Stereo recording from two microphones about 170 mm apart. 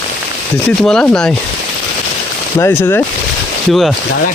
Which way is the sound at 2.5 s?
15° left (ahead or behind).